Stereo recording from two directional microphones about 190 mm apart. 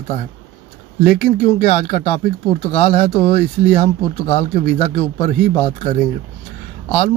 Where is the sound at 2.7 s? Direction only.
30° left (ahead or behind).